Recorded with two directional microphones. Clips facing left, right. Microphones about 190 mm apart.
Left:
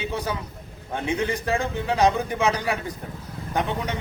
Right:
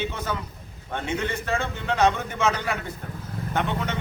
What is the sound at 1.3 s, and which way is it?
Speech, 15° left (ahead or behind).